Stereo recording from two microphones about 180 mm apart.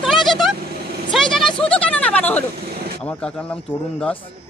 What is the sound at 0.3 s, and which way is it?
Vehicle, centre (ahead or behind).